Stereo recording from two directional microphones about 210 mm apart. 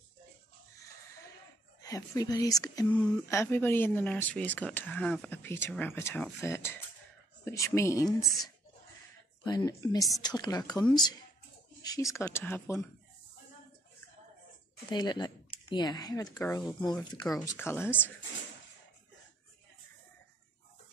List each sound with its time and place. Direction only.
1.8 s speech: 15° left (ahead or behind)
14.9 s speech: 20° left (ahead or behind)